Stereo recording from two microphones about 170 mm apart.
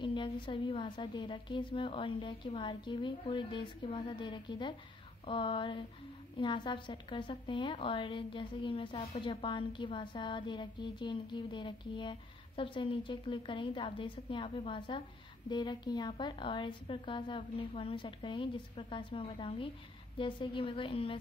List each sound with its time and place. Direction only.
0.0 s a woman's voice: 30° left (ahead or behind)